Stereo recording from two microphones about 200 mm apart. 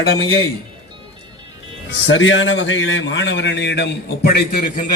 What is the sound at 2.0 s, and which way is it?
A man's voice, 70° left (ahead or behind).